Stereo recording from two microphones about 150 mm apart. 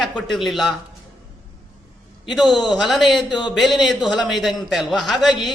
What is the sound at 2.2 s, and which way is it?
A man's voice, centre (ahead or behind).